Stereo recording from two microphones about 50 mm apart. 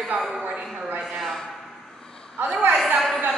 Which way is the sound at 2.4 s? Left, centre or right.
Right.